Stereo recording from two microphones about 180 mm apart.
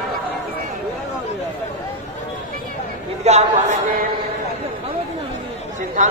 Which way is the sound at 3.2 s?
40° right (ahead or behind).